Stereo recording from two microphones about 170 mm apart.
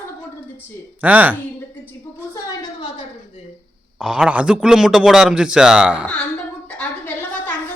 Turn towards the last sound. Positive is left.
turn(degrees=10)  # may be behind; listen again after turning